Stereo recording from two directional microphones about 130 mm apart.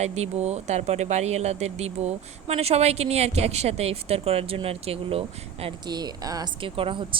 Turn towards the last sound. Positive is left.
turn(degrees=-40)  # may be behind; listen again after turning